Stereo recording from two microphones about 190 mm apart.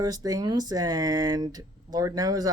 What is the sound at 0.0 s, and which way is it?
Speech, 20° right (ahead or behind).